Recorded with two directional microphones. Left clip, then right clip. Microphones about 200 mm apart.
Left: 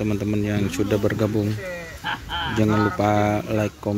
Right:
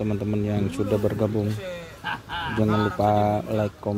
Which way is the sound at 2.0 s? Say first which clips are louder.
Left 3 dB; 50° right (ahead or behind).